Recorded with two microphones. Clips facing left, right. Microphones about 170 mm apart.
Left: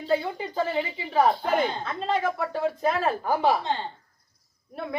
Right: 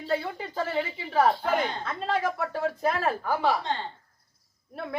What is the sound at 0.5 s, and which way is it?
Speech, 5° left (ahead or behind).